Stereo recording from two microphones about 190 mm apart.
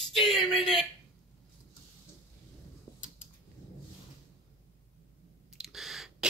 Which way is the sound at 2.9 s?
20° left (ahead or behind).